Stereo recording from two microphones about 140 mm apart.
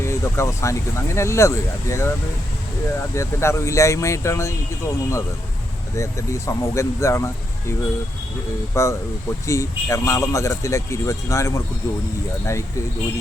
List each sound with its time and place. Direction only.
0.0 s speech: 20° left (ahead or behind)
3.2 s speech: 20° left (ahead or behind)
8.7 s speech: 20° left (ahead or behind)